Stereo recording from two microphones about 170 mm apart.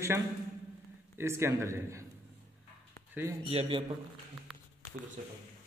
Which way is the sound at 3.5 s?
35° right (ahead or behind).